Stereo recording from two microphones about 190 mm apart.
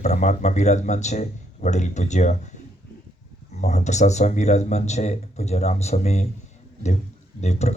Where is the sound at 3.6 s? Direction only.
35° left (ahead or behind).